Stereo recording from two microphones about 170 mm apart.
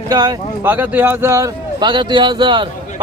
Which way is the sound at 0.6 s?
10° right (ahead or behind).